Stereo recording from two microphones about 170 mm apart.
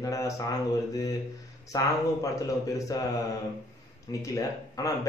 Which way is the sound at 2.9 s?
20° left (ahead or behind).